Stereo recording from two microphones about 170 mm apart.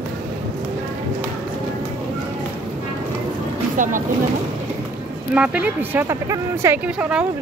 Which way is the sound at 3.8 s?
50° right (ahead or behind).